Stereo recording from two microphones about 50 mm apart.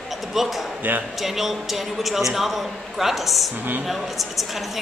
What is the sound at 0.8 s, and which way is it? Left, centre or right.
Speech, right.